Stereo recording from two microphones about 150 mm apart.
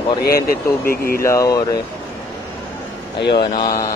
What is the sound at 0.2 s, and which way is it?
Speech, 85° left.